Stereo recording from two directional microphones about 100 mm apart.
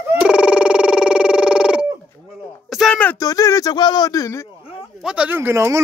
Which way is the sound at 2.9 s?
15° left (ahead or behind).